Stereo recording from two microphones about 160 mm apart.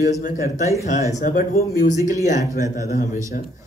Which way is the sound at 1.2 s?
60° left (ahead or behind).